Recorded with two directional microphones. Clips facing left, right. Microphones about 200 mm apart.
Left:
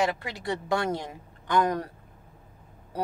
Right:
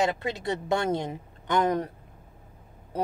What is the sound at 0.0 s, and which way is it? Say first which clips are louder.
A woman's voice: right 1 dB; 25° right (ahead or behind).